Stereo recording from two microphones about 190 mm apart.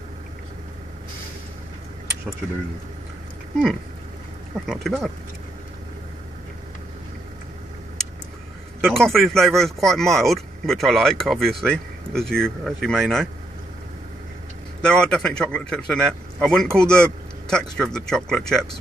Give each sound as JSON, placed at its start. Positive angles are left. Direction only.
{"t": 4.6, "sound": "a man's voice", "side_deg": 0}
{"t": 8.8, "sound": "a man's voice", "side_deg": 0}
{"t": 14.8, "sound": "a man's voice", "side_deg": 5}